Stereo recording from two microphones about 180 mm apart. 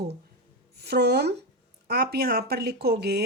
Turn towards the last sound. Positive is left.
turn(degrees=-60)  # may be behind; listen again after turning